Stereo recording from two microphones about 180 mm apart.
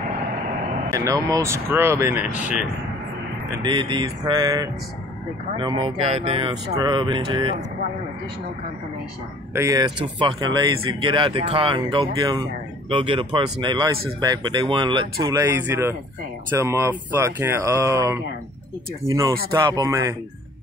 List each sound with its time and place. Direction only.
0.9 s speech: 20° right (ahead or behind)
3.6 s speech: 25° right (ahead or behind)
9.5 s speech: 15° right (ahead or behind)